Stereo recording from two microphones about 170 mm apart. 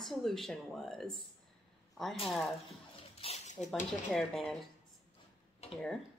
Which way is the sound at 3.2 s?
40° left (ahead or behind).